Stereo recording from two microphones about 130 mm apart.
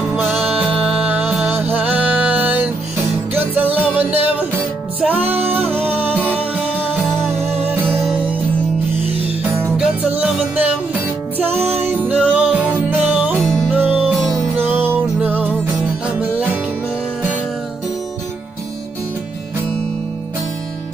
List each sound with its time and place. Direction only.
0.1 s music: 10° right (ahead or behind)
5.2 s music: 50° right (ahead or behind)
5.5 s music: 15° right (ahead or behind)
6.1 s music: 10° left (ahead or behind)
8.0 s music: 10° right (ahead or behind)
9.8 s music: 10° right (ahead or behind)
12.1 s music: 10° right (ahead or behind)